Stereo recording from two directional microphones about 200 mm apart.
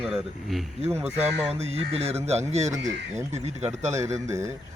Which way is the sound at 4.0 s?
15° right (ahead or behind).